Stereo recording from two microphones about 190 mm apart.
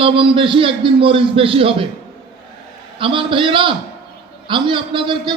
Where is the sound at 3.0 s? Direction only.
25° right (ahead or behind).